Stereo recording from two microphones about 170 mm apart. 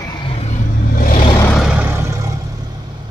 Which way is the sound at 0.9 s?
55° left (ahead or behind).